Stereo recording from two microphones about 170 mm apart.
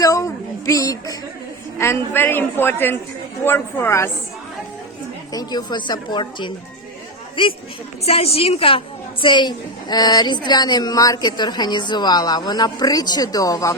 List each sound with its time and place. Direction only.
0.0 s a sound: 20° left (ahead or behind)
1.8 s a man's voice: 15° left (ahead or behind)
5.3 s a woman's voice: 25° left (ahead or behind)